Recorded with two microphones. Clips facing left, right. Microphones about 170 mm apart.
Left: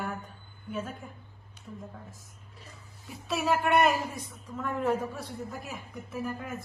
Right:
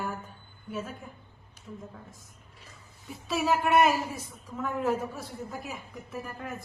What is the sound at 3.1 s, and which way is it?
A woman's voice, centre (ahead or behind).